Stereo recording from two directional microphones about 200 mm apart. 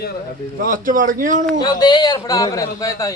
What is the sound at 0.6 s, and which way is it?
Speech, 45° right (ahead or behind).